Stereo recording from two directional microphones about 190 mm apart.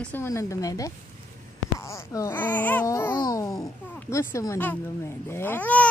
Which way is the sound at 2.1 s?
10° left (ahead or behind).